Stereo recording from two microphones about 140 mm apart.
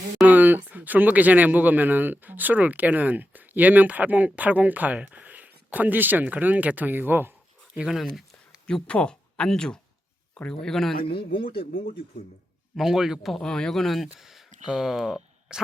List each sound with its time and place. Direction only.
0.3 s speech: 10° right (ahead or behind)
7.8 s speech: centre (ahead or behind)
11.3 s speech: 90° left
12.7 s speech: centre (ahead or behind)